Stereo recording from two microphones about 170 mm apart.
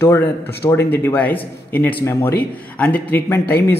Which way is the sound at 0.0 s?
15° left (ahead or behind).